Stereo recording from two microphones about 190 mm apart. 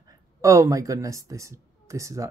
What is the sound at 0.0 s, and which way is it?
Speech, 15° right (ahead or behind).